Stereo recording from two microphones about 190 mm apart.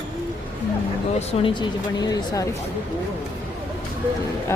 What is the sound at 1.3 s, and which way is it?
A woman's voice, 25° left (ahead or behind).